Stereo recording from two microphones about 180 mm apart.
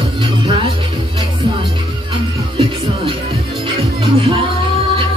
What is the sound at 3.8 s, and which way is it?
Music, 30° right (ahead or behind).